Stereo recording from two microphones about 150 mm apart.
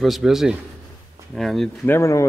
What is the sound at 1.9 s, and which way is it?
Speech, 20° left (ahead or behind).